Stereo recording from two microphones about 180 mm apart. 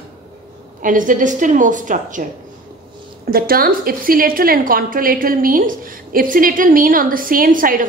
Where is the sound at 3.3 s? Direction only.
55° right (ahead or behind).